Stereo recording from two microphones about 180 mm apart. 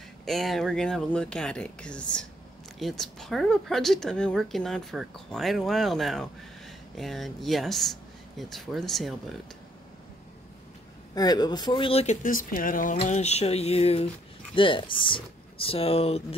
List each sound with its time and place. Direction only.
0.2 s speech: centre (ahead or behind)
11.1 s speech: 20° left (ahead or behind); by 12.9 s 50° left (ahead or behind)
12.9 s speech: 40° left (ahead or behind)